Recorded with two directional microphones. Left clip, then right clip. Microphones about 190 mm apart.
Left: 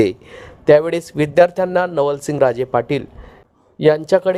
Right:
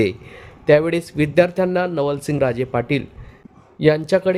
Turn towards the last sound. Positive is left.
turn(degrees=30)  # may be behind; listen again after turning